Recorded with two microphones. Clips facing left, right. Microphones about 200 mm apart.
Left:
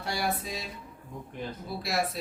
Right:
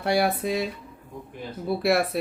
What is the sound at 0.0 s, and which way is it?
Speech, 60° right (ahead or behind).